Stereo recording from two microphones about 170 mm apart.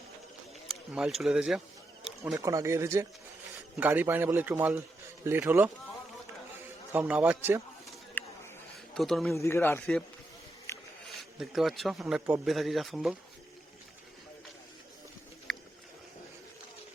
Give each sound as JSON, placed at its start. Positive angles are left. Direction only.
{"t": 0.7, "sound": "speech", "side_deg": -5}
{"t": 2.3, "sound": "a man's voice", "side_deg": -20}
{"t": 6.9, "sound": "a man's voice", "side_deg": -10}
{"t": 8.2, "sound": "a sound", "side_deg": 10}
{"t": 9.0, "sound": "speech", "side_deg": 0}
{"t": 9.3, "sound": "a man's voice", "side_deg": 15}
{"t": 11.1, "sound": "speech", "side_deg": 0}
{"t": 15.5, "sound": "a sound", "side_deg": 5}